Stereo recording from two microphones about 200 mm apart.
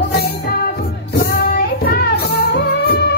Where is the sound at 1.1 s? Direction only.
50° left (ahead or behind).